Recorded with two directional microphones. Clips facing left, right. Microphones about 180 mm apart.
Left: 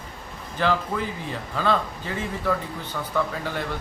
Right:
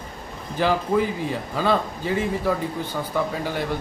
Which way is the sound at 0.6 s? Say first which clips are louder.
Right 4 dB; 10° right (ahead or behind).